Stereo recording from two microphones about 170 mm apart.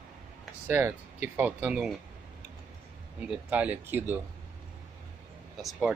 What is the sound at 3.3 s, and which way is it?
Speech, 10° right (ahead or behind).